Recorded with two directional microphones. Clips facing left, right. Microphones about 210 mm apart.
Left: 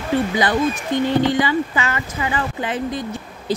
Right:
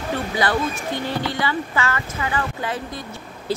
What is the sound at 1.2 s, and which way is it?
A woman's voice, 15° left (ahead or behind).